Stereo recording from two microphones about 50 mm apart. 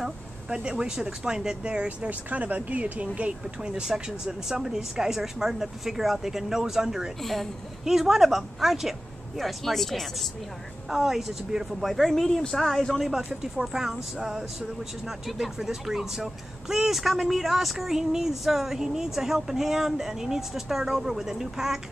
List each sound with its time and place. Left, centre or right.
0.5 s speech: centre
2.0 s speech: right
3.6 s speech: centre
10.9 s speech: centre
13.3 s speech: centre